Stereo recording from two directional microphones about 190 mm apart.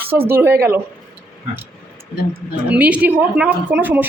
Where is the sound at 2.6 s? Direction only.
5° right (ahead or behind).